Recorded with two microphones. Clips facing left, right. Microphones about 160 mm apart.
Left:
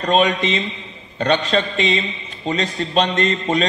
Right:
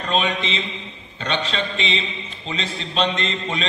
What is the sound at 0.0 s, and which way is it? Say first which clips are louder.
A man's voice: left 6 dB; 45° left (ahead or behind).